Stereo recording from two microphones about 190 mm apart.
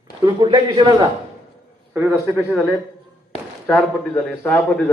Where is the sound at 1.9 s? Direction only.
10° right (ahead or behind).